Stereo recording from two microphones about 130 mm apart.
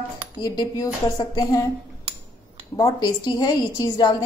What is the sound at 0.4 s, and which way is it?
A woman's voice, 30° left (ahead or behind).